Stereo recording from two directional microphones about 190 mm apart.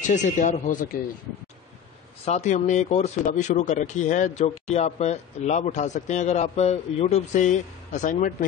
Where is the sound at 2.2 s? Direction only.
35° left (ahead or behind).